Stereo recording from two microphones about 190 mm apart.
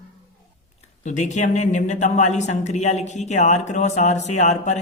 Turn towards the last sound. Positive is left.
turn(degrees=40)  # may be behind; listen again after turning